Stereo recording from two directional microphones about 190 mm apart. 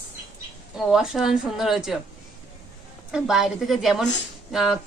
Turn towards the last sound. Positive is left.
turn(degrees=0)  # may be behind; listen again after turning